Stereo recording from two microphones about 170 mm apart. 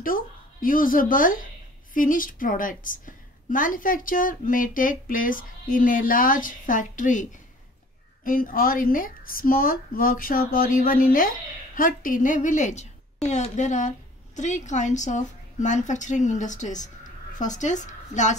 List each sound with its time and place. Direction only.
0.0 s a woman's voice: 55° left (ahead or behind)